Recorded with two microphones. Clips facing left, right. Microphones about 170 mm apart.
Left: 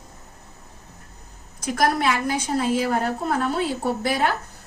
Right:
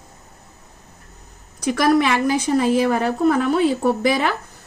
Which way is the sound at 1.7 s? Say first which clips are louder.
Right 5 dB; 90° right.